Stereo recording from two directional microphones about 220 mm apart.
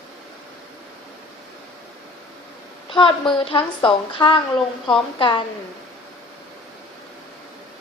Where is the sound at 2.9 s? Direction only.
20° left (ahead or behind).